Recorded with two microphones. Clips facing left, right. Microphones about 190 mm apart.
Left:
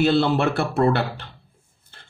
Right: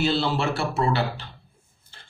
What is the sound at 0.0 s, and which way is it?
Speech, 55° left (ahead or behind).